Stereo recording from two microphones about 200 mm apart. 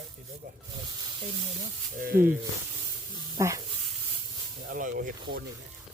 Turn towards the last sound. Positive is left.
turn(degrees=-45)  # may be behind; listen again after turning